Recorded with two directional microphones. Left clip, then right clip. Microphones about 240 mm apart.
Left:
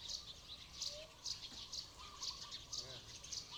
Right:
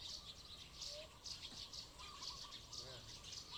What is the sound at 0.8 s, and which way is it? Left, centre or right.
Bird, left.